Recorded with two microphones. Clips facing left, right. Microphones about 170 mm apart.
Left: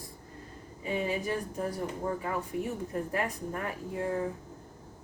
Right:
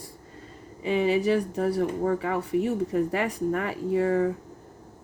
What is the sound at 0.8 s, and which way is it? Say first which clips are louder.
Speech: right 8 dB; 80° right.